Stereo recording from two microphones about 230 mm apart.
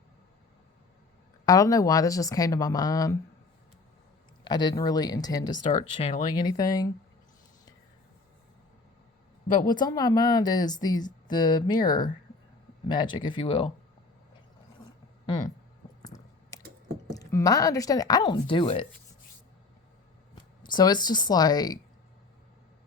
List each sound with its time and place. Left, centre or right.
1.5 s speech: centre
4.4 s speech: centre
5.7 s speech: left
9.7 s speech: centre
15.3 s speech: centre
16.0 s a sound: centre
17.1 s speech: centre
20.6 s speech: centre